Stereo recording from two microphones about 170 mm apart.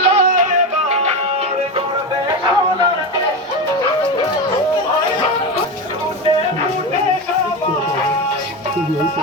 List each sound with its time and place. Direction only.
0.0 s music: 35° right (ahead or behind)
0.3 s music: 50° right (ahead or behind)